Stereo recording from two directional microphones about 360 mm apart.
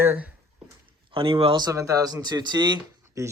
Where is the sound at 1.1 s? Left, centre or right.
Centre.